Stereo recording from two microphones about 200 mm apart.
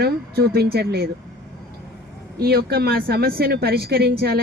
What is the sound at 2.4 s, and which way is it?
Speech, 50° right (ahead or behind).